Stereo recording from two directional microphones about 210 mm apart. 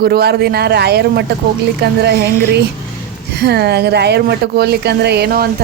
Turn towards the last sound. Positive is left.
turn(degrees=-50)  # may be behind; listen again after turning